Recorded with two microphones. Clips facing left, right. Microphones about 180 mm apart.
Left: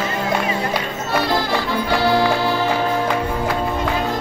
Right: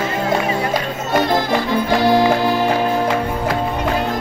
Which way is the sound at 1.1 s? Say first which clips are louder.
Right 3 dB; 20° right (ahead or behind).